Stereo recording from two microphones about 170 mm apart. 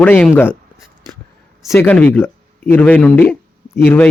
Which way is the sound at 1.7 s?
10° left (ahead or behind).